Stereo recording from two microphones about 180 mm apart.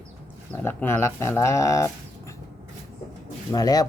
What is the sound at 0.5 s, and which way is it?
Speech, 10° left (ahead or behind).